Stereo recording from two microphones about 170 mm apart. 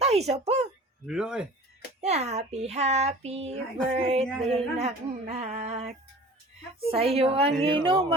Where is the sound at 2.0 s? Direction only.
40° right (ahead or behind).